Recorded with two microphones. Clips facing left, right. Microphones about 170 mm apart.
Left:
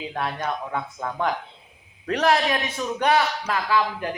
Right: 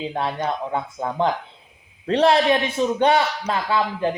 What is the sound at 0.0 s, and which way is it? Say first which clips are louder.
A man's voice: right 4 dB; 25° right (ahead or behind).